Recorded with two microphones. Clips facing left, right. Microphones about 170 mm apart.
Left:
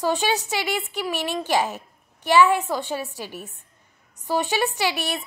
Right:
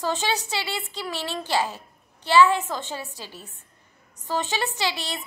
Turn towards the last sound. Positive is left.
turn(degrees=15)  # may be behind; listen again after turning